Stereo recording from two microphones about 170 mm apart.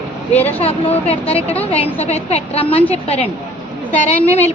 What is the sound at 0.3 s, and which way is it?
Speech, 10° left (ahead or behind).